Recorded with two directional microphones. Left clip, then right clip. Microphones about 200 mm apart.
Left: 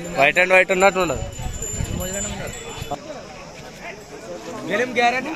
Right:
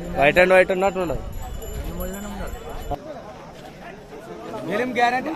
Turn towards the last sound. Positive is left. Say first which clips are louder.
# left 2 dB
turn(degrees=-55)  # may be behind; listen again after turning